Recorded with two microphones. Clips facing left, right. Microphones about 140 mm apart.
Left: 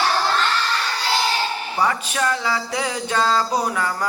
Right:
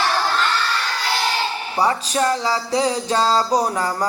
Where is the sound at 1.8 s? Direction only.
30° right (ahead or behind).